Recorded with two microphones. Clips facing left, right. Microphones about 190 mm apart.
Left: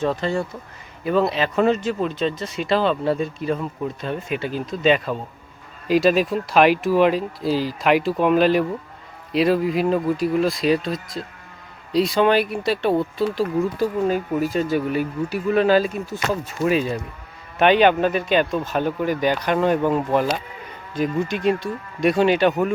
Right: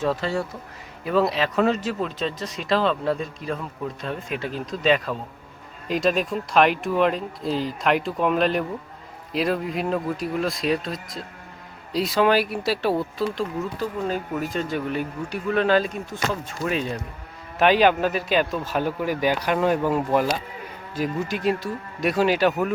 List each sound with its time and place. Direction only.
0.0 s speech: 5° right (ahead or behind)